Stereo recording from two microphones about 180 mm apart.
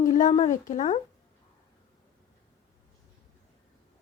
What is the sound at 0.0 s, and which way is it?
Speech, 45° left (ahead or behind).